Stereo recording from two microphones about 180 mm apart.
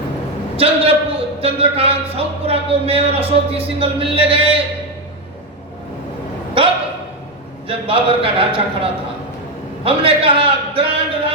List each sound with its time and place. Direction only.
0.5 s a man's voice: 30° right (ahead or behind)
6.6 s a sound: 30° right (ahead or behind)
7.7 s a man's voice: 30° right (ahead or behind)